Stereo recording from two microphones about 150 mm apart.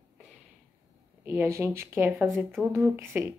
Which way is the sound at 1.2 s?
15° right (ahead or behind).